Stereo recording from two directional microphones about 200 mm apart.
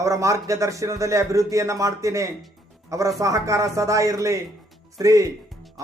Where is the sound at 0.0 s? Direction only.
15° right (ahead or behind).